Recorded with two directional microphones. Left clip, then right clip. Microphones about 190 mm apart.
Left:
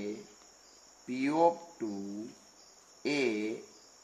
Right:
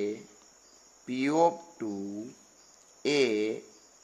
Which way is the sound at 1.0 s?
50° right (ahead or behind).